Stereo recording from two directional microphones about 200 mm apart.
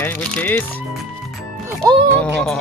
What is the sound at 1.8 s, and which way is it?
Speech, 20° right (ahead or behind).